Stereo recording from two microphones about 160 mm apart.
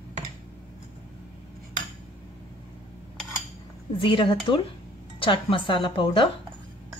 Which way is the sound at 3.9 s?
30° left (ahead or behind).